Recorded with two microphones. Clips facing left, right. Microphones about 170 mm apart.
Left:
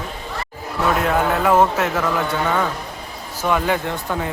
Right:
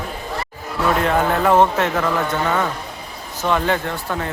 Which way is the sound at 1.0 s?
5° left (ahead or behind).